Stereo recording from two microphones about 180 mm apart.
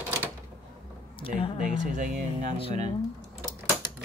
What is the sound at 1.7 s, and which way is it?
Speech, 45° right (ahead or behind).